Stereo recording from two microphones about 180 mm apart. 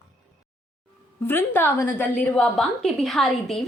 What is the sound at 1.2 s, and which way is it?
A woman's voice, 10° left (ahead or behind).